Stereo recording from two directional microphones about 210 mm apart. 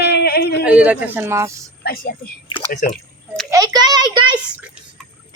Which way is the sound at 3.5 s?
20° right (ahead or behind).